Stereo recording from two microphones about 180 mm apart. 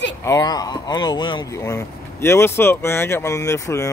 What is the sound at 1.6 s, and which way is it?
Speech, 15° left (ahead or behind).